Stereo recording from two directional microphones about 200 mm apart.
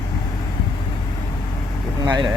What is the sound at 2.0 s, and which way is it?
Speech, 20° right (ahead or behind).